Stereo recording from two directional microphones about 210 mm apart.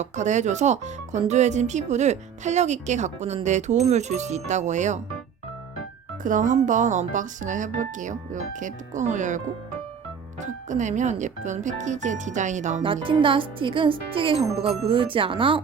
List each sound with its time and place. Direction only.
0.0 s speech: 35° right (ahead or behind)
6.2 s speech: 40° right (ahead or behind)
10.4 s speech: 35° right (ahead or behind)